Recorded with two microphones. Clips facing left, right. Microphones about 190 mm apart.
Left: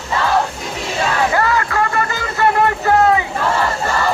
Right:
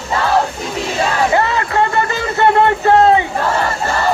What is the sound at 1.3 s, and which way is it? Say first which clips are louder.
Music: right 2 dB; 25° right (ahead or behind).